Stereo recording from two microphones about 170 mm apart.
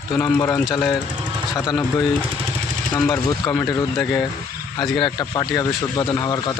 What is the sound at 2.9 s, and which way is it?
Speech, 5° left (ahead or behind).